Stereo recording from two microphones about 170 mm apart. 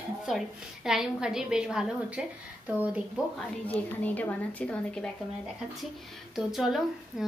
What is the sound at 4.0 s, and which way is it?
A woman's voice, 10° left (ahead or behind).